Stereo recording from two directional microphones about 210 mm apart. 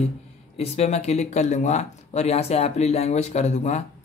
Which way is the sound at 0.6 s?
30° left (ahead or behind).